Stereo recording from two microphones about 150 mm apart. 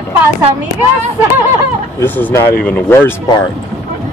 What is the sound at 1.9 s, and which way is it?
Speech, 10° left (ahead or behind).